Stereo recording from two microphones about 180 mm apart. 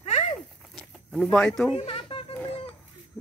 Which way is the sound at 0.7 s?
Centre (ahead or behind).